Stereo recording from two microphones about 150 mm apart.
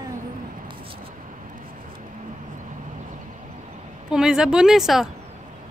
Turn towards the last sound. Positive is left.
turn(degrees=0)  # may be behind; listen again after turning